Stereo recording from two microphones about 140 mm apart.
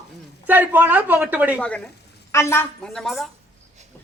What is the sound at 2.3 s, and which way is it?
Speech, 20° left (ahead or behind).